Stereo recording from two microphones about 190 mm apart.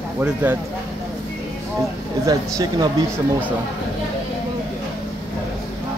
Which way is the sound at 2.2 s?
20° right (ahead or behind).